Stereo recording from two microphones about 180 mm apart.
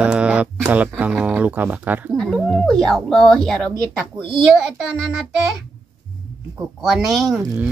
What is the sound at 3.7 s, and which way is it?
Speech, 25° right (ahead or behind).